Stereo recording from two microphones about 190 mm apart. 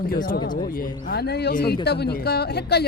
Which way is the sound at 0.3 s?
25° left (ahead or behind).